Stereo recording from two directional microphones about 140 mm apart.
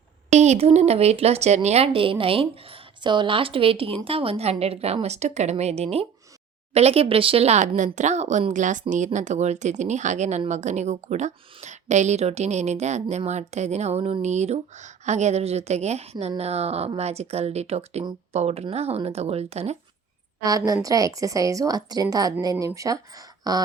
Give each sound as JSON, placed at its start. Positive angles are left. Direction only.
{"t": 0.3, "sound": "a woman's voice", "side_deg": -55}
{"t": 20.4, "sound": "a woman's voice", "side_deg": -25}